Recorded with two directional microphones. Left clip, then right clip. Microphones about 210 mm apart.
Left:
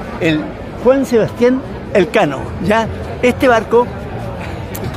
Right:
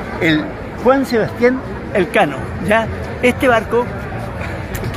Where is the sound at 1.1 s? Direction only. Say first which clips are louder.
Left 2 dB; 40° left (ahead or behind).